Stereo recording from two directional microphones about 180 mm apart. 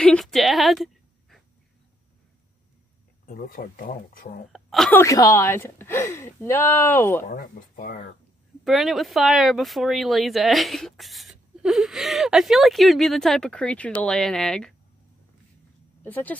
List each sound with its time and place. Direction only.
0.0 s a sound: 5° left (ahead or behind)
3.3 s speech: 50° left (ahead or behind)
4.5 s speech: centre (ahead or behind)
5.0 s speech: 20° left (ahead or behind)
7.2 s speech: 50° left (ahead or behind)
8.6 s speech: centre (ahead or behind)
16.0 s speech: 10° left (ahead or behind)